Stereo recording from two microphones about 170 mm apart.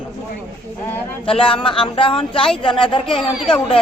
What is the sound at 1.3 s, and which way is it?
A woman's voice, 30° left (ahead or behind).